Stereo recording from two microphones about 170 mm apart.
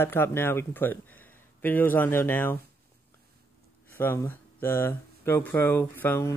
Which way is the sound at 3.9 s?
10° left (ahead or behind).